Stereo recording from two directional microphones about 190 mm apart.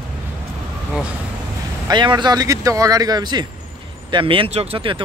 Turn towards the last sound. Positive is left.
turn(degrees=-25)  # may be behind; listen again after turning